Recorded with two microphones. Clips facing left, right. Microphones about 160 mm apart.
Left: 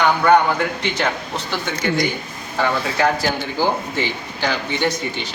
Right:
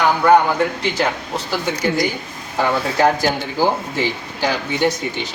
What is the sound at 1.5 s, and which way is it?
Speech, 10° right (ahead or behind).